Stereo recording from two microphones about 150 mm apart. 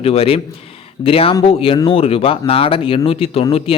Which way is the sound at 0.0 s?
40° left (ahead or behind).